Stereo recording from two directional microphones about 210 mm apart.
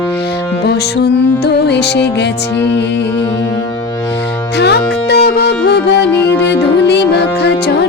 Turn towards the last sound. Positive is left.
turn(degrees=50)  # may be behind; listen again after turning